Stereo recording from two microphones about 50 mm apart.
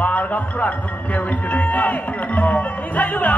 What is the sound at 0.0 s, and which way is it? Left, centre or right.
Speech, left.